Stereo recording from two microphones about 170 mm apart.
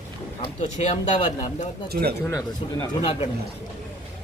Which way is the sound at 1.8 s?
65° right (ahead or behind).